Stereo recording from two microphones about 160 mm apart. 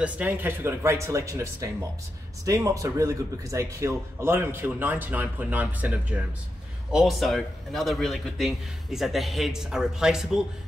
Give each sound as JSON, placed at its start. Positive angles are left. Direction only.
{"t": 0.0, "sound": "a man's voice", "side_deg": -10}